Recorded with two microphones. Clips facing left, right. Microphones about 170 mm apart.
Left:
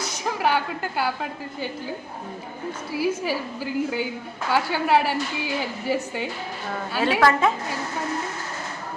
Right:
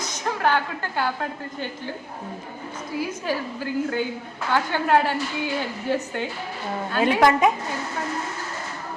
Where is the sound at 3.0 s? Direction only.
10° left (ahead or behind).